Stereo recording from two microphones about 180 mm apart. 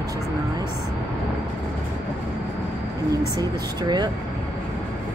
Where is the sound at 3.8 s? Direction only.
25° right (ahead or behind).